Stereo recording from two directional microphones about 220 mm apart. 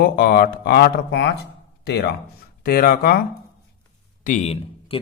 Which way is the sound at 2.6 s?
40° left (ahead or behind).